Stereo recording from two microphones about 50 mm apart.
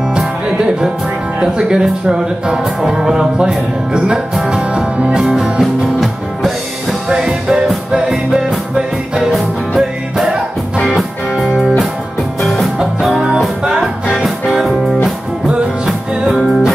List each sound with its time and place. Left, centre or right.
0.6 s music: centre
1.4 s speech: centre
7.1 s music: centre
8.1 s music: centre
11.3 s music: centre
12.4 s music: centre
13.7 s music: centre
16.3 s music: centre